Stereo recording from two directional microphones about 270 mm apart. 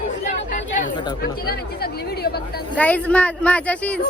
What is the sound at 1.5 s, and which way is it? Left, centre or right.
Speech, left.